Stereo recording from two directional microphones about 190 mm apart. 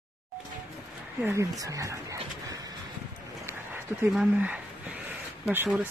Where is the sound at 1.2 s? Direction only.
15° right (ahead or behind).